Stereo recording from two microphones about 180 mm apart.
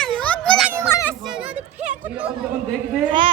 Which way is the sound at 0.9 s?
15° left (ahead or behind).